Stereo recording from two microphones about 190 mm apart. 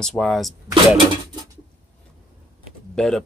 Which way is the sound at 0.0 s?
Centre (ahead or behind).